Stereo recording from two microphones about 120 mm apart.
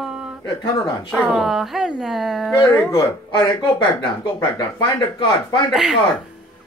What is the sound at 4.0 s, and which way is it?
Speech, 45° left (ahead or behind).